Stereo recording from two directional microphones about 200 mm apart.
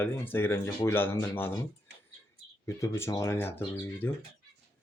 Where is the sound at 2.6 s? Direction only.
15° left (ahead or behind).